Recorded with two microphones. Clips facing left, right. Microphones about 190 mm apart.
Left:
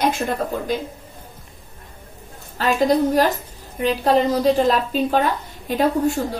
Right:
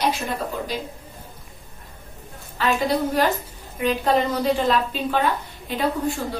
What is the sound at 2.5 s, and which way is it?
A woman's voice, 40° left (ahead or behind).